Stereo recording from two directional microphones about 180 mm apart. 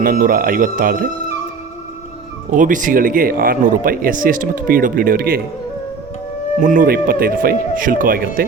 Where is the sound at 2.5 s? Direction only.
45° right (ahead or behind).